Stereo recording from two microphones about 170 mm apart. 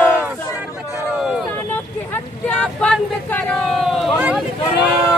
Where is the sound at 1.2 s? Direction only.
5° right (ahead or behind).